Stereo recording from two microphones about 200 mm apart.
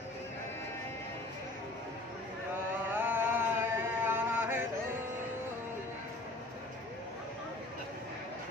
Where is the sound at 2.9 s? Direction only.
10° right (ahead or behind).